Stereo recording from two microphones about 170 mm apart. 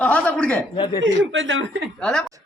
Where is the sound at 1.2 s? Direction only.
90° right.